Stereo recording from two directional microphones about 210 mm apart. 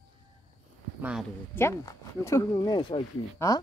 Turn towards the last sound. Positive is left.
turn(degrees=20)  # may be behind; listen again after turning